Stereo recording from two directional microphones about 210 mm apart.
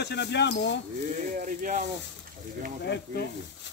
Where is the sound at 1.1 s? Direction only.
40° right (ahead or behind).